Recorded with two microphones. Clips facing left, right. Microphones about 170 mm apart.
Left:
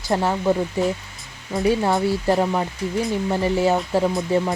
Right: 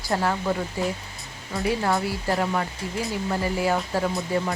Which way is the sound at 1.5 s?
20° left (ahead or behind).